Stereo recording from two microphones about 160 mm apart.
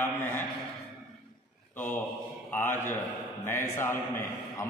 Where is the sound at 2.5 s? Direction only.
15° left (ahead or behind).